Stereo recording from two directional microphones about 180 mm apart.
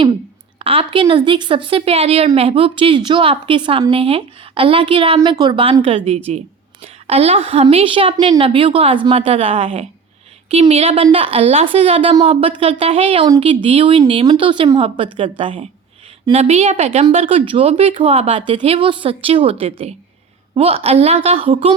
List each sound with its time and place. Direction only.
0.6 s a woman's voice: 30° right (ahead or behind)